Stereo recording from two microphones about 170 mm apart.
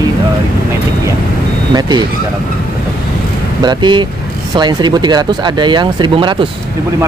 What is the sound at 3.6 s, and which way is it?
Speech, 25° right (ahead or behind).